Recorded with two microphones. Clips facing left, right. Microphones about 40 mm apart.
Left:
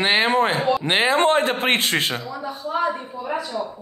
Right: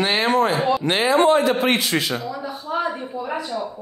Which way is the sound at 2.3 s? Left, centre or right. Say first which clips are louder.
Even; centre.